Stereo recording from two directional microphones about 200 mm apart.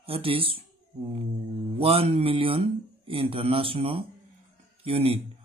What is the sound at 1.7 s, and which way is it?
Speech, 25° right (ahead or behind).